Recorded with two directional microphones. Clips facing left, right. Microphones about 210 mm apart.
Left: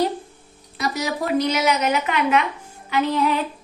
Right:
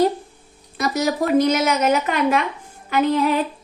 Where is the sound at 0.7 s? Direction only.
45° right (ahead or behind).